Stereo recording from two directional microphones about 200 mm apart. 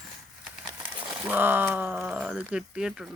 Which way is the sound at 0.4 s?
5° right (ahead or behind).